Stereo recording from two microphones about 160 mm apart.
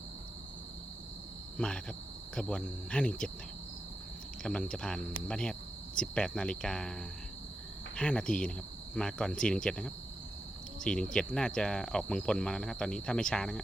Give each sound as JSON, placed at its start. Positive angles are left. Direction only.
{"t": 1.5, "sound": "speech", "side_deg": 5}
{"t": 4.4, "sound": "speech", "side_deg": 5}
{"t": 7.9, "sound": "cricket", "side_deg": 5}
{"t": 9.0, "sound": "speech", "side_deg": 5}